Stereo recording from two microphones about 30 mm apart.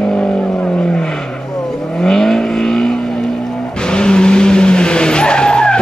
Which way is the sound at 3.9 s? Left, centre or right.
Left.